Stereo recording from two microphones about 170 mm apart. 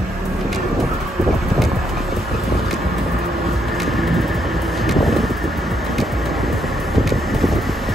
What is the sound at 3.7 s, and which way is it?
Vehicle, centre (ahead or behind).